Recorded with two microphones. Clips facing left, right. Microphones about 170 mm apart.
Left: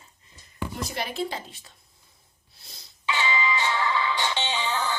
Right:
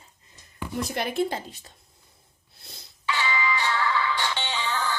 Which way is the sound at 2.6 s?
55° right (ahead or behind).